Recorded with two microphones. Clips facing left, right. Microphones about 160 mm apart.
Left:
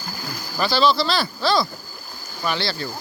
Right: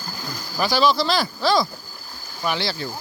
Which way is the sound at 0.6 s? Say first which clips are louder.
Even; 15° right (ahead or behind).